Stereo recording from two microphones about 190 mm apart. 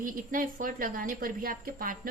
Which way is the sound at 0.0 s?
45° right (ahead or behind).